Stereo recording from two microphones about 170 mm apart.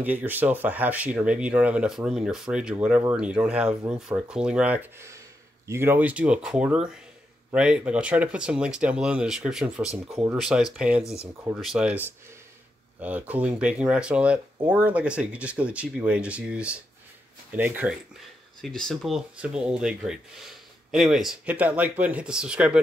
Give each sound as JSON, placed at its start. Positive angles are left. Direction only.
{"t": 0.0, "sound": "speech", "side_deg": -10}
{"t": 18.6, "sound": "speech", "side_deg": 5}